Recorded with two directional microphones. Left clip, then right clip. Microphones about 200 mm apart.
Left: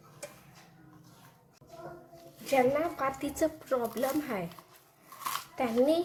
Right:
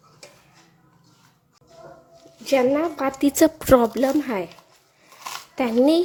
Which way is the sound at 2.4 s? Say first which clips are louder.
Right 7 dB; 50° right (ahead or behind).